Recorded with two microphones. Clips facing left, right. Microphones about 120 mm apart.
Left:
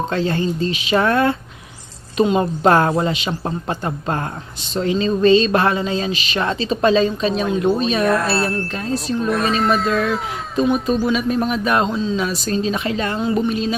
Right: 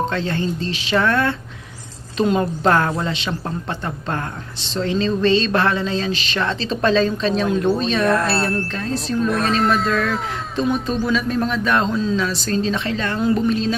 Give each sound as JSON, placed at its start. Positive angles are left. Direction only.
{"t": 0.1, "sound": "a man's voice", "side_deg": 15}
{"t": 2.1, "sound": "a woman's voice", "side_deg": 5}
{"t": 2.4, "sound": "a man's voice", "side_deg": 20}
{"t": 11.9, "sound": "speech", "side_deg": 0}
{"t": 12.5, "sound": "speech", "side_deg": 10}